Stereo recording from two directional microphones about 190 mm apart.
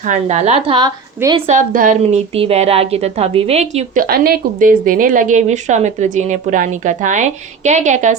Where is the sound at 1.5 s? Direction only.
40° right (ahead or behind).